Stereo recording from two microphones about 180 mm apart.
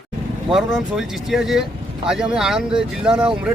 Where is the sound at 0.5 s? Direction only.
5° right (ahead or behind).